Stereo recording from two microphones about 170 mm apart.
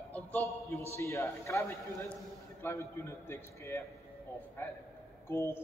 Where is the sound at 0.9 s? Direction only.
15° left (ahead or behind).